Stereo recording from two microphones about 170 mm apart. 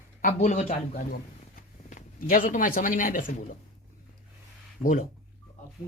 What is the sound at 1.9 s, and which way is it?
Speech, 50° left (ahead or behind).